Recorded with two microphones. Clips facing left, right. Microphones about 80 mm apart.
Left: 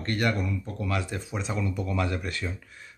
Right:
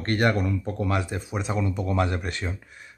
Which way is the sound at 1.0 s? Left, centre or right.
Centre.